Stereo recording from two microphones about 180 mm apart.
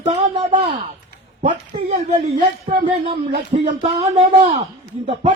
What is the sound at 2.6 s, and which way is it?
Speech, 30° right (ahead or behind).